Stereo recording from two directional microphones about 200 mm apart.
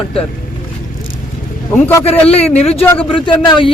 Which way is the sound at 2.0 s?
30° left (ahead or behind).